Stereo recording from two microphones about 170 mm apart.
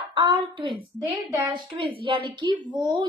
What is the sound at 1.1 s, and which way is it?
Speech, 15° right (ahead or behind).